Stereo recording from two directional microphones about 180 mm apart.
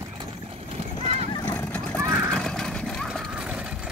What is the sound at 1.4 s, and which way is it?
Fowl, 10° left (ahead or behind).